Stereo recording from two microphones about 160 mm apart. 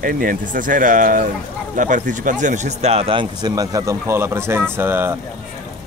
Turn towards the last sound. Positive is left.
turn(degrees=-15)  # may be behind; listen again after turning